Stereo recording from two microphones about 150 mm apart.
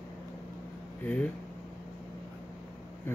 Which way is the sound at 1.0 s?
10° left (ahead or behind).